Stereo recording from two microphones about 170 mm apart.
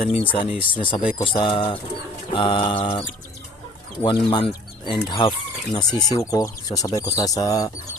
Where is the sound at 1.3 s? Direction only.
30° left (ahead or behind).